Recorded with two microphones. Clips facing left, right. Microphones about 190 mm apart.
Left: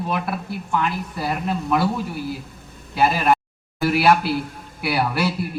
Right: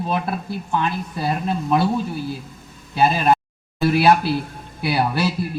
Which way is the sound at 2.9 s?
25° right (ahead or behind).